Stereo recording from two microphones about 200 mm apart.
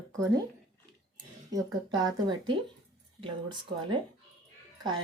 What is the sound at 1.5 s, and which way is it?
Speech, 20° right (ahead or behind).